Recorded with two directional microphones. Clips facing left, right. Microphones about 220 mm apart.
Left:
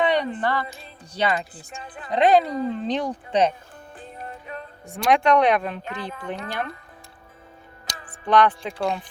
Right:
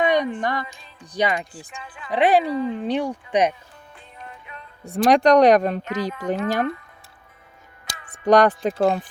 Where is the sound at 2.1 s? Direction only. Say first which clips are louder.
Even; 10° right (ahead or behind).